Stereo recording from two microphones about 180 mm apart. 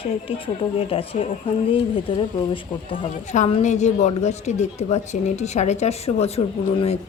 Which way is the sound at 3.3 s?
35° left (ahead or behind).